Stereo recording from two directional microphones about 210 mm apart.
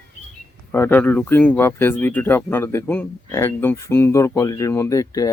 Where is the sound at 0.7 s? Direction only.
10° left (ahead or behind).